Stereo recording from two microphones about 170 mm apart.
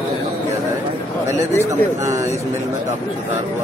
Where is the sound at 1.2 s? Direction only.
15° right (ahead or behind).